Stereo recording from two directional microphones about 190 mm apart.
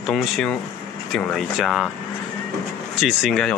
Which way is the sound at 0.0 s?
Centre (ahead or behind).